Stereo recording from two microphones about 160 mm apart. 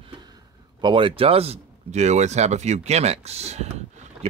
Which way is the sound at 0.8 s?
30° right (ahead or behind).